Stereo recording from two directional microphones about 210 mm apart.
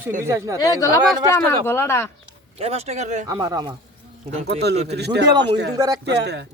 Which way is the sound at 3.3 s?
15° right (ahead or behind).